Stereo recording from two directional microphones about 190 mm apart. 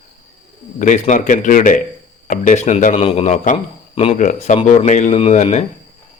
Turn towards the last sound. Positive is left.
turn(degrees=35)  # may be behind; listen again after turning